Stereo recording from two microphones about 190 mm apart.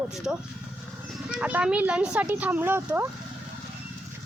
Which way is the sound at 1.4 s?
5° right (ahead or behind).